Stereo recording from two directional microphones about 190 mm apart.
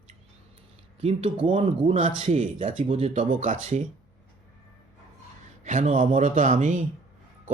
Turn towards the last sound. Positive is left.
turn(degrees=-45)  # may be behind; listen again after turning